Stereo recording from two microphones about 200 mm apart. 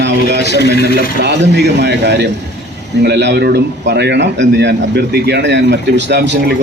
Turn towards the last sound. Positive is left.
turn(degrees=-55)  # may be behind; listen again after turning